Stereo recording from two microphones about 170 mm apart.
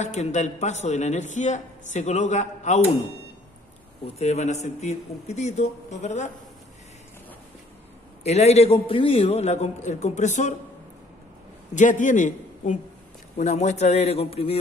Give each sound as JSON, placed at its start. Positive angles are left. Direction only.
{"t": 0.0, "sound": "a man's voice", "side_deg": 45}
{"t": 4.2, "sound": "a man's voice", "side_deg": 40}
{"t": 8.2, "sound": "a man's voice", "side_deg": 40}
{"t": 11.7, "sound": "a man's voice", "side_deg": 50}